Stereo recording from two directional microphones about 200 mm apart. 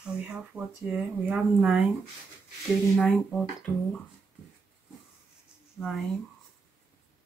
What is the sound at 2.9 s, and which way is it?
Speech, 5° left (ahead or behind).